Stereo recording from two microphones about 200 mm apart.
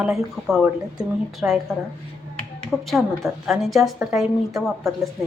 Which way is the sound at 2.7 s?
Centre (ahead or behind).